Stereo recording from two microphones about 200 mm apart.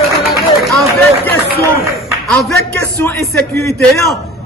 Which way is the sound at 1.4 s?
50° right (ahead or behind).